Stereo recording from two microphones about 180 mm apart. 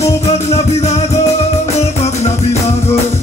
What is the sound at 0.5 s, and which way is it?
Music, 35° left (ahead or behind).